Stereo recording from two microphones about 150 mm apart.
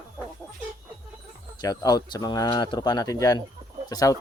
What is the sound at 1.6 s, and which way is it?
Speech, 25° left (ahead or behind).